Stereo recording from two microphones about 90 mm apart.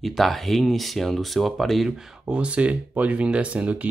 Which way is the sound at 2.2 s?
15° right (ahead or behind).